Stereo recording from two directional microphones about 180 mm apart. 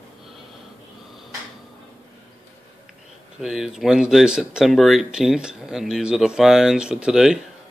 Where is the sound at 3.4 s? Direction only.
Centre (ahead or behind).